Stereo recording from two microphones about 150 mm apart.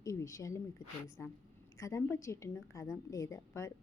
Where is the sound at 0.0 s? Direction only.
20° left (ahead or behind).